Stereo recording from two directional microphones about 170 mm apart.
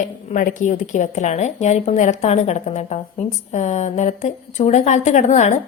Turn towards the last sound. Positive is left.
turn(degrees=45)  # may be behind; listen again after turning